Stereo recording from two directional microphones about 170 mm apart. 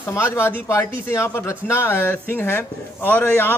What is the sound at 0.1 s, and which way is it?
A man's voice, 15° left (ahead or behind).